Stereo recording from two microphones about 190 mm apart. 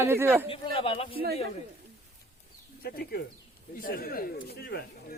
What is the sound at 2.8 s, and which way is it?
Speech, 55° left (ahead or behind).